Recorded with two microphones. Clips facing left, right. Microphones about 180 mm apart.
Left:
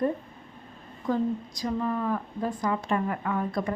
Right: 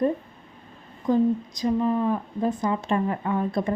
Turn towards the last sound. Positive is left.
turn(degrees=-25)  # may be behind; listen again after turning